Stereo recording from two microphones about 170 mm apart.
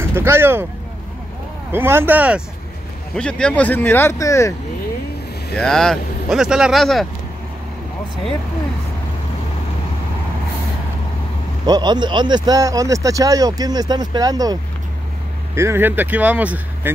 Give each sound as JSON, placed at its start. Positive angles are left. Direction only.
{"t": 0.0, "sound": "speech", "side_deg": -15}
{"t": 1.7, "sound": "speech", "side_deg": -15}
{"t": 3.2, "sound": "speech", "side_deg": 5}
{"t": 5.6, "sound": "speech", "side_deg": 5}
{"t": 11.6, "sound": "speech", "side_deg": -25}